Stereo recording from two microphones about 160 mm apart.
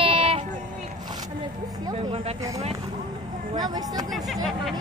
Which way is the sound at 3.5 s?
25° right (ahead or behind).